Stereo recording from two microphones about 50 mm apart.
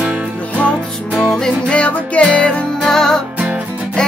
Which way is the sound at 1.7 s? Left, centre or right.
Left.